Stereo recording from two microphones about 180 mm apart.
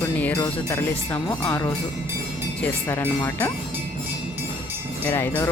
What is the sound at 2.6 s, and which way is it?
Speech, 10° left (ahead or behind).